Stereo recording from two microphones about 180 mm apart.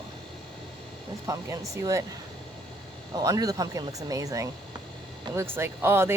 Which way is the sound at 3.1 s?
20° right (ahead or behind).